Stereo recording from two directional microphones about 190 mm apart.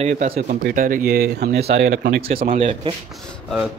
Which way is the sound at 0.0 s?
40° right (ahead or behind).